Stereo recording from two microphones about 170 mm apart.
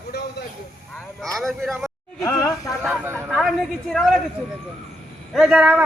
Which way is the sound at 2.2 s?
15° left (ahead or behind).